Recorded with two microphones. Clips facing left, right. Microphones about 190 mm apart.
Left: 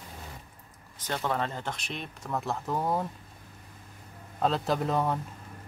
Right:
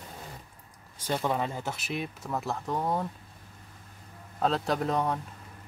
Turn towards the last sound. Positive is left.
turn(degrees=0)  # may be behind; listen again after turning